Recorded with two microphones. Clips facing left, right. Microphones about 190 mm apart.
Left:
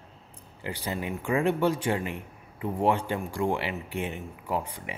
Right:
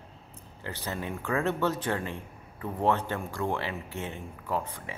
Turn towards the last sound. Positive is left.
turn(degrees=15)  # may be behind; listen again after turning